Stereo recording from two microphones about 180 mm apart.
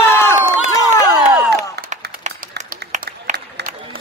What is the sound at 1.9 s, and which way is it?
Applause, 40° right (ahead or behind).